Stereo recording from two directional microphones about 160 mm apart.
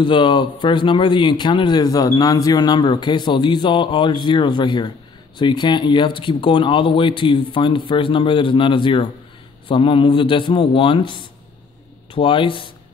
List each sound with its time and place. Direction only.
0.0 s a man's voice: 30° left (ahead or behind)